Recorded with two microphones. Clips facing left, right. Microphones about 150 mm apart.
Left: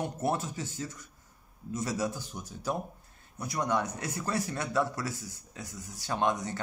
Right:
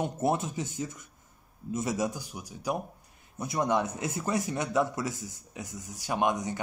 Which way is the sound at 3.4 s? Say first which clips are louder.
Right 3 dB; 20° right (ahead or behind).